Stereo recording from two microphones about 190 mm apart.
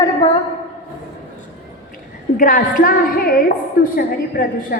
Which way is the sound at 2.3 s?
45° left (ahead or behind).